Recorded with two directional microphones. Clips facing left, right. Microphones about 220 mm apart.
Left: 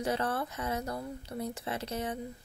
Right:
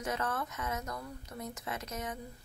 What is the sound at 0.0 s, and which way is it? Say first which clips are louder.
A woman's voice: left 4 dB; 30° left (ahead or behind).